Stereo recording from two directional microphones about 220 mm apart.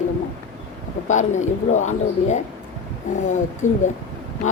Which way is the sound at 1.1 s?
35° left (ahead or behind).